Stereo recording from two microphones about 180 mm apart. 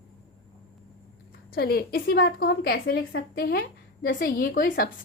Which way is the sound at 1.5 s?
60° left (ahead or behind).